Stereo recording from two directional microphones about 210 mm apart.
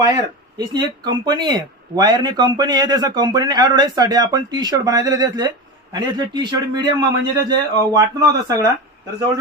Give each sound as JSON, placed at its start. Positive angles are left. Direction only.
{"t": 0.0, "sound": "speech", "side_deg": -20}